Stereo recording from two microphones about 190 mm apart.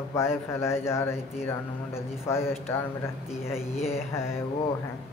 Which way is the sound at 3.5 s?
35° left (ahead or behind).